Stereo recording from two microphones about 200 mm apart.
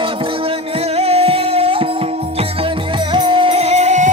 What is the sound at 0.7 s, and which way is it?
Music, 30° right (ahead or behind).